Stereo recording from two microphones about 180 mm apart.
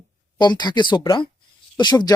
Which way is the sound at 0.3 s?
25° left (ahead or behind).